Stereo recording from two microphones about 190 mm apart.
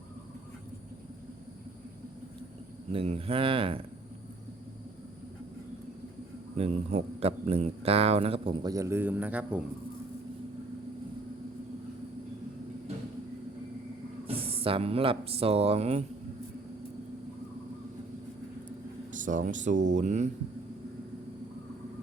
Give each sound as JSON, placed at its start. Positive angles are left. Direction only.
{"t": 2.9, "sound": "speech", "side_deg": -30}
{"t": 6.6, "sound": "a man's voice", "side_deg": -35}
{"t": 14.3, "sound": "speech", "side_deg": -30}
{"t": 19.1, "sound": "a man's voice", "side_deg": -40}